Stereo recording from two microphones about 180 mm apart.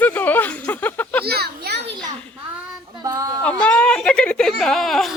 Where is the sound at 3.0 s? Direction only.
20° right (ahead or behind).